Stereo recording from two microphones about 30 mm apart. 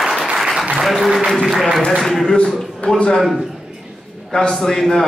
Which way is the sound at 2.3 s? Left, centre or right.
Left.